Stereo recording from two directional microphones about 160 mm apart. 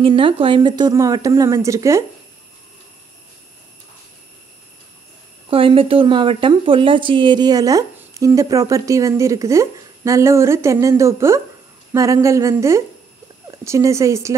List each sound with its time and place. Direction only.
0.0 s speech: 35° right (ahead or behind)
5.5 s speech: 35° right (ahead or behind); by 14.3 s 20° right (ahead or behind)